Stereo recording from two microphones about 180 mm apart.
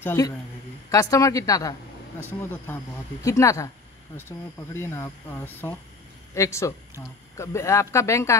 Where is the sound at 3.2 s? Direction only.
15° left (ahead or behind).